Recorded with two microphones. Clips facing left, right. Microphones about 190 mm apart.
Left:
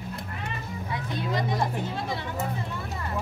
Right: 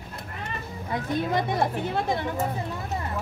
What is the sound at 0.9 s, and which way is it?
Speech, 50° right (ahead or behind).